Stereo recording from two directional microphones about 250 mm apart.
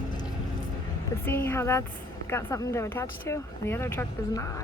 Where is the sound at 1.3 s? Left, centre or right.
Centre.